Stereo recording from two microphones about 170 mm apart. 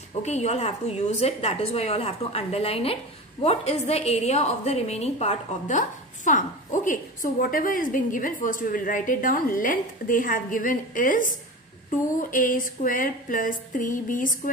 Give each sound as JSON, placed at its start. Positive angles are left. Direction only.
{"t": 0.2, "sound": "a woman's voice", "side_deg": 40}